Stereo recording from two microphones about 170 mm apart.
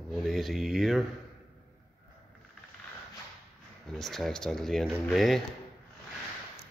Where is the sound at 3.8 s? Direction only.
Centre (ahead or behind).